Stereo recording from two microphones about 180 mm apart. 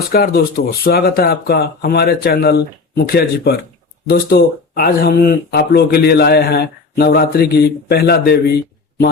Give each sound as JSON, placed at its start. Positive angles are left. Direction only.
{"t": 0.1, "sound": "speech", "side_deg": 60}